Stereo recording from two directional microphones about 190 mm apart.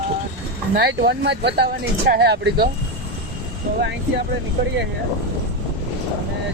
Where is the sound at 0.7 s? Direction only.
65° right (ahead or behind).